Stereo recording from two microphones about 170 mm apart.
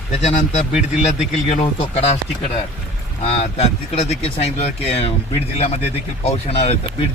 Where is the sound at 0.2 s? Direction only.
45° left (ahead or behind).